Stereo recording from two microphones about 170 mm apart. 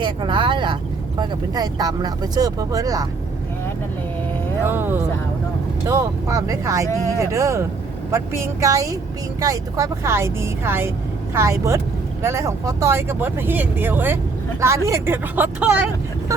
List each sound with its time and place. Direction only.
0.0 s speech: 25° right (ahead or behind)
4.6 s speech: 10° right (ahead or behind)